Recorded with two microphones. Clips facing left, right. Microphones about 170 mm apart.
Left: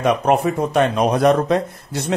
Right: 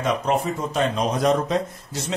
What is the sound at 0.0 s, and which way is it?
Speech, 65° left (ahead or behind).